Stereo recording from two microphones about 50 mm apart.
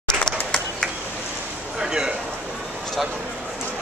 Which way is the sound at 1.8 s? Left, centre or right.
Centre.